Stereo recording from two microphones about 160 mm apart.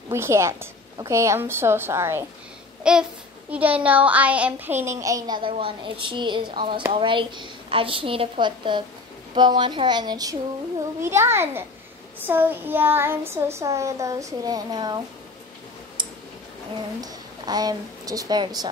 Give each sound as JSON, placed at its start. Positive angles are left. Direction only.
{"t": 0.1, "sound": "a child's voice", "side_deg": -15}
{"t": 2.8, "sound": "a child's voice", "side_deg": -5}
{"t": 16.0, "sound": "a sound", "side_deg": -30}
{"t": 17.0, "sound": "a woman's voice", "side_deg": -25}